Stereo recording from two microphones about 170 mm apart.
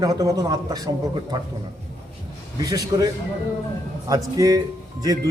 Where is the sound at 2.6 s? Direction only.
20° right (ahead or behind).